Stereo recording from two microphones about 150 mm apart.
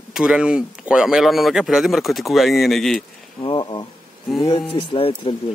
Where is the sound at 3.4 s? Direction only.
30° left (ahead or behind).